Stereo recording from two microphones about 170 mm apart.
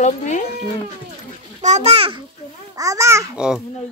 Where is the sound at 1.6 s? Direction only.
40° right (ahead or behind).